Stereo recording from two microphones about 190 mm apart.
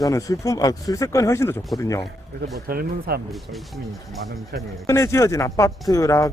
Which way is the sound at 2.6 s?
50° right (ahead or behind).